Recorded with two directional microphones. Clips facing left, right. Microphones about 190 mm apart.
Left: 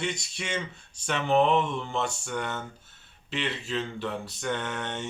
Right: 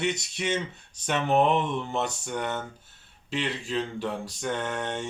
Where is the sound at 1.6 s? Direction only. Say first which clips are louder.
Even; 20° right (ahead or behind).